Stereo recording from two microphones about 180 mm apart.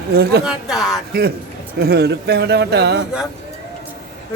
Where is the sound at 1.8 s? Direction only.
65° right (ahead or behind).